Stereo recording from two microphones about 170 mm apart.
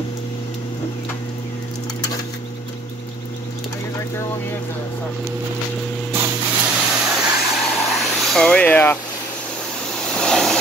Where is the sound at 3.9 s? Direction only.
15° left (ahead or behind).